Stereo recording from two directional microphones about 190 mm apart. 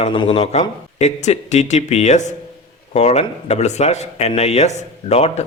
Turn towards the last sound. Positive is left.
turn(degrees=35)  # may be behind; listen again after turning